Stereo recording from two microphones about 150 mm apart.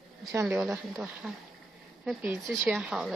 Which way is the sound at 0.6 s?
5° right (ahead or behind).